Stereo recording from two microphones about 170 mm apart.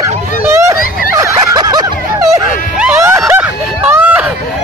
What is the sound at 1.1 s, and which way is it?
Snicker, 20° right (ahead or behind).